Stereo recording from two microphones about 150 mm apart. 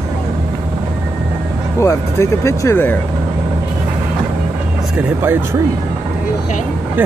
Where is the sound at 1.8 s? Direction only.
20° left (ahead or behind).